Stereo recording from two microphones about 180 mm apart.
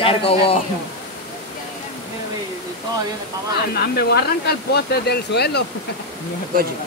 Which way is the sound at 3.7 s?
65° left (ahead or behind).